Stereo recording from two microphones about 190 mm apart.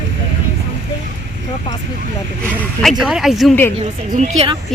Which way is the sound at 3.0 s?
Centre (ahead or behind).